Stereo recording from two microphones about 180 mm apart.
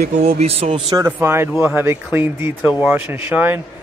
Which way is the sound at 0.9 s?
15° right (ahead or behind).